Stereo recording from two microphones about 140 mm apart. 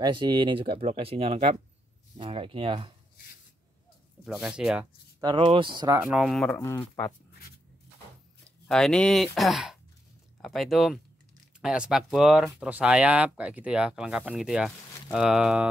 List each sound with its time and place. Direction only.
0.0 s speech: 35° right (ahead or behind)
4.2 s speech: 5° right (ahead or behind)
5.2 s speech: 35° right (ahead or behind)
5.8 s speech: 20° right (ahead or behind)
6.0 s speech: 5° right (ahead or behind)
6.5 s speech: 15° left (ahead or behind)
6.8 s speech: 30° left (ahead or behind)
8.6 s speech: 5° left (ahead or behind)